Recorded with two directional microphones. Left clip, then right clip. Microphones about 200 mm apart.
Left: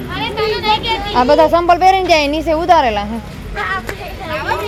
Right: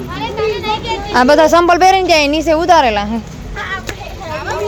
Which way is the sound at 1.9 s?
15° right (ahead or behind).